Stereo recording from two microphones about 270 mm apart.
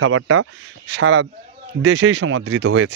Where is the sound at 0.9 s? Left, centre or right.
Right.